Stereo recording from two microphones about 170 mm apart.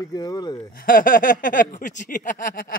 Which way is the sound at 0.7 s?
55° left (ahead or behind).